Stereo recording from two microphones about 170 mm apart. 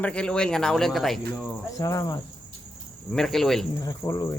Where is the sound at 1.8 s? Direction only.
20° left (ahead or behind).